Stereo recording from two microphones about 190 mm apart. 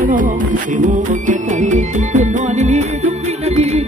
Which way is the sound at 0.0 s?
45° right (ahead or behind).